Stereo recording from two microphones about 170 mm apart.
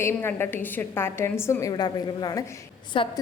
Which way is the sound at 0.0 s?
15° left (ahead or behind).